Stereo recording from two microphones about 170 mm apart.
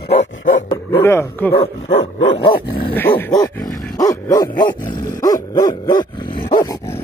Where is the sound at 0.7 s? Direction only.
15° left (ahead or behind).